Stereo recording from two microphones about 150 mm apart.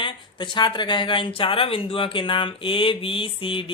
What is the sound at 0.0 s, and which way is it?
A man's voice, 30° left (ahead or behind).